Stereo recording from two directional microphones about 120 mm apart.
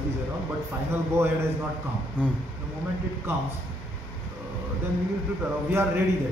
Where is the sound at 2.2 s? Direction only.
10° right (ahead or behind).